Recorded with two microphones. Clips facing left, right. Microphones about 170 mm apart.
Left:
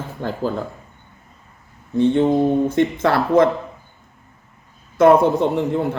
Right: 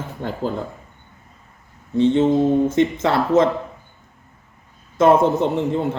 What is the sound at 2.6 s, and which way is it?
Speech, 20° right (ahead or behind).